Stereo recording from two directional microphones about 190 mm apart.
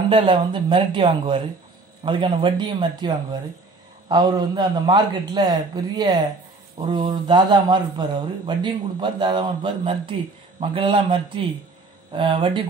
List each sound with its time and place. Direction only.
0.1 s speech: 25° right (ahead or behind)